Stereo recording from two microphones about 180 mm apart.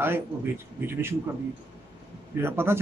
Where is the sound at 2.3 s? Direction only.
15° right (ahead or behind).